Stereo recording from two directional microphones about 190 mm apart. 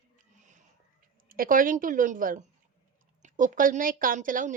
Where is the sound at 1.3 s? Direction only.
45° right (ahead or behind).